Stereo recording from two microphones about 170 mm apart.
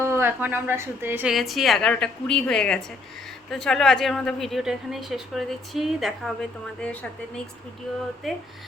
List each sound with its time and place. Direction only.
0.0 s a woman's voice: 15° right (ahead or behind)
8.2 s a woman's voice: centre (ahead or behind)